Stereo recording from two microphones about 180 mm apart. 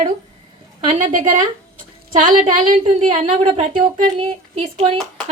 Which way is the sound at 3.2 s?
30° right (ahead or behind).